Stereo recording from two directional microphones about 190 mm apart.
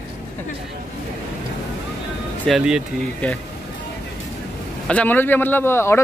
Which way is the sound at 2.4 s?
5° right (ahead or behind).